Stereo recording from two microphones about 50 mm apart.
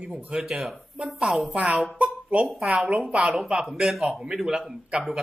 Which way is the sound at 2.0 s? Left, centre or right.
Right.